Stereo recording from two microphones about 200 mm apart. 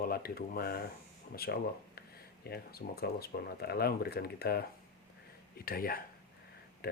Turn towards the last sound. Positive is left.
turn(degrees=50)  # may be behind; listen again after turning